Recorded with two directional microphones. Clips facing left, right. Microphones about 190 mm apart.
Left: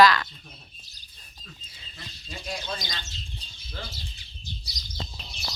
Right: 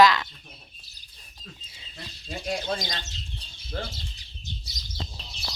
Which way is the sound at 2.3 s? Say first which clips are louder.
Right 5 dB; 50° right (ahead or behind).